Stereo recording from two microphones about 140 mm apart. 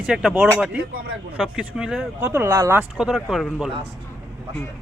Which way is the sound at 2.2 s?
20° right (ahead or behind).